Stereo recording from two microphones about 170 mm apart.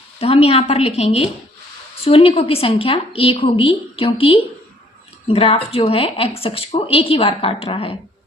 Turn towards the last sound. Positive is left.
turn(degrees=35)  # may be behind; listen again after turning